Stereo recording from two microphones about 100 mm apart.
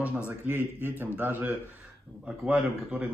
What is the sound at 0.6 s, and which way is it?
Speech, 25° left (ahead or behind).